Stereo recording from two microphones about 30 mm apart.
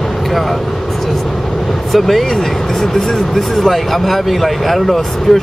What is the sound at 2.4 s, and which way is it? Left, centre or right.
Speech, centre.